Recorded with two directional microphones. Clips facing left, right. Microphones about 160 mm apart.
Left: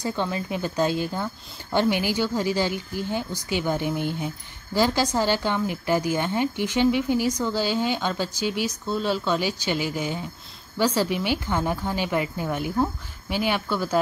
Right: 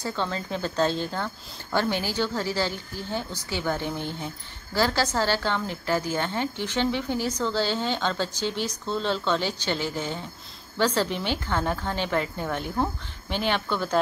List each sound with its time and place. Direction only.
0.0 s a woman's voice: 15° left (ahead or behind)